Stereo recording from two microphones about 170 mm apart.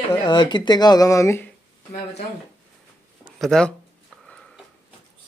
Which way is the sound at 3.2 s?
Centre (ahead or behind).